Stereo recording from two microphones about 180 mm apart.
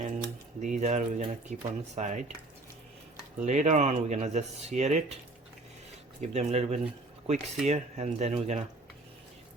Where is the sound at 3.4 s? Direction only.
40° right (ahead or behind).